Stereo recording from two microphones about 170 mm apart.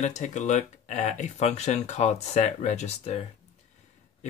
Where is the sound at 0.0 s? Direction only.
45° left (ahead or behind).